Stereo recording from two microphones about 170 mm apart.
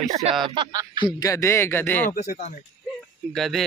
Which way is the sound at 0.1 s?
40° right (ahead or behind).